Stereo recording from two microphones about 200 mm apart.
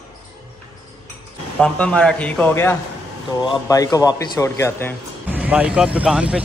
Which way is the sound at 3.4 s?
20° left (ahead or behind).